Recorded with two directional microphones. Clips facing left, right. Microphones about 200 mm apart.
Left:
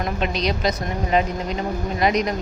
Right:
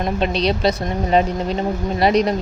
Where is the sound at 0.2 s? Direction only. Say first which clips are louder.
Right 5 dB; 30° right (ahead or behind).